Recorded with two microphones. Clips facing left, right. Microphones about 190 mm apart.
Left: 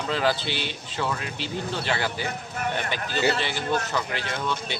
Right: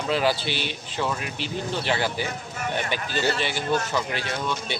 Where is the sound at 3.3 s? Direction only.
15° right (ahead or behind).